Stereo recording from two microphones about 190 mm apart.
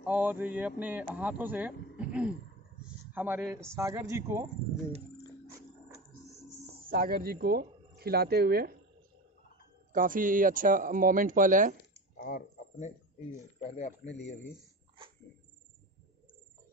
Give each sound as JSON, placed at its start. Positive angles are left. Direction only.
{"t": 0.0, "sound": "speech", "side_deg": -10}
{"t": 2.0, "sound": "throat clearing", "side_deg": -5}
{"t": 2.8, "sound": "a sound", "side_deg": -10}
{"t": 3.7, "sound": "speech", "side_deg": -15}
{"t": 6.9, "sound": "speech", "side_deg": -50}
{"t": 9.9, "sound": "speech", "side_deg": -45}
{"t": 12.3, "sound": "speech", "side_deg": 45}